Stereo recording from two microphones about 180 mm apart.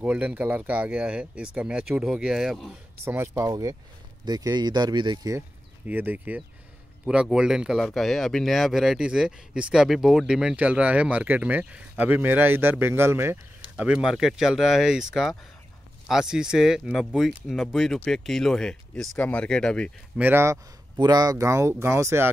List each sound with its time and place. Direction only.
0.0 s speech: 10° right (ahead or behind)
3.2 s speech: 15° right (ahead or behind)
5.9 s speech: 10° right (ahead or behind)
16.1 s speech: 5° right (ahead or behind)
20.2 s speech: 10° right (ahead or behind)